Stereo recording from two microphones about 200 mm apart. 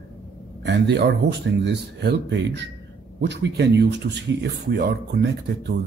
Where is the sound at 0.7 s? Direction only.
60° right (ahead or behind).